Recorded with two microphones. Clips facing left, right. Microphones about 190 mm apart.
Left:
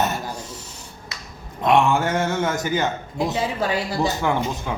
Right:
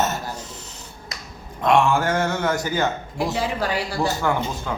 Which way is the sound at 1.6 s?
20° left (ahead or behind).